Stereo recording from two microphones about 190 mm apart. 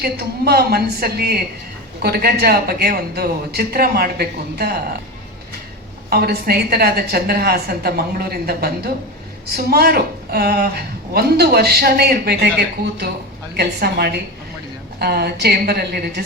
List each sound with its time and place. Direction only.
0.0 s speech: 55° right (ahead or behind)
6.1 s speech: 55° right (ahead or behind)